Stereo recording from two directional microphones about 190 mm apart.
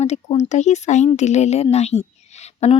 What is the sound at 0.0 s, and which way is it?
A woman's voice, 35° left (ahead or behind).